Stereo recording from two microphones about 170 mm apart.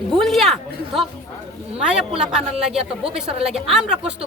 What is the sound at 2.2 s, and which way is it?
Speech, 5° right (ahead or behind).